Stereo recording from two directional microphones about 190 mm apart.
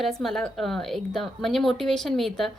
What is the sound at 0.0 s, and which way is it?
A woman's voice, centre (ahead or behind).